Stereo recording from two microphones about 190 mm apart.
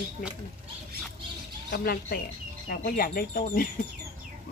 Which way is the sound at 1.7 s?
50° left (ahead or behind).